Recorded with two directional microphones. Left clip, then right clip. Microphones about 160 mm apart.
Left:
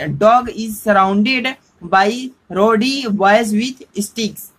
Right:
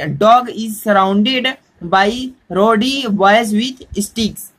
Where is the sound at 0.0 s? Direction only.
25° right (ahead or behind).